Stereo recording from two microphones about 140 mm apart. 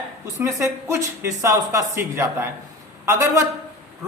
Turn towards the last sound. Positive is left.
turn(degrees=-20)  # may be behind; listen again after turning